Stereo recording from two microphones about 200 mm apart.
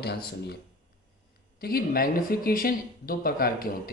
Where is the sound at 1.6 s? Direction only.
50° left (ahead or behind).